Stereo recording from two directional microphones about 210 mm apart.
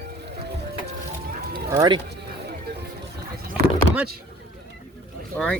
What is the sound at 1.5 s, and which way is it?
Run, 20° right (ahead or behind).